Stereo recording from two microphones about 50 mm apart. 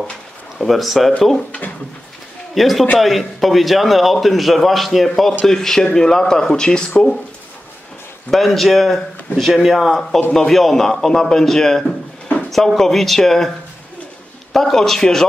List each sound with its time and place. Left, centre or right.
0.6 s a man's voice: centre
2.5 s a man's voice: centre
8.3 s a man's voice: centre
14.5 s a man's voice: centre